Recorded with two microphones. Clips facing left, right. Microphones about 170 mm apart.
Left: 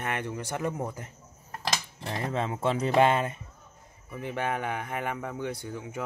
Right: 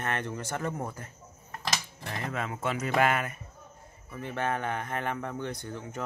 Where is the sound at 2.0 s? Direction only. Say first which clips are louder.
Left 5 dB; 25° left (ahead or behind).